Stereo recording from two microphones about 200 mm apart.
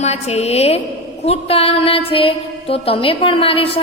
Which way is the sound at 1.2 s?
30° left (ahead or behind).